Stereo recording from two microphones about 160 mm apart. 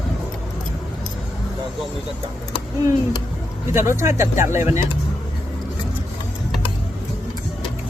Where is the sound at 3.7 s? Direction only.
15° right (ahead or behind).